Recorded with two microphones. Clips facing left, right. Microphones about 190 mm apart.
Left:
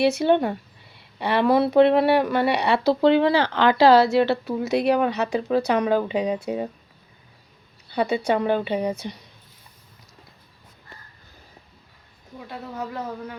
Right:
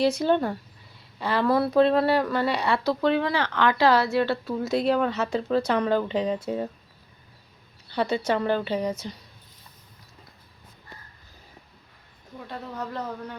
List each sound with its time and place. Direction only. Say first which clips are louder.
0.1 s a woman's voice: left 3 dB; 10° left (ahead or behind)
1.4 s speech: left 4 dB; 20° left (ahead or behind)
2.6 s a woman's voice: left 7 dB; 30° left (ahead or behind); by 6.7 s 15° left (ahead or behind)
7.9 s a woman's voice: left 3 dB; 15° left (ahead or behind)
12.4 s a woman's voice: left 2 dB; 5° left (ahead or behind)